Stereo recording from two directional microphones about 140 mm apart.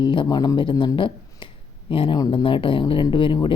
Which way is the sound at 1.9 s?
40° left (ahead or behind).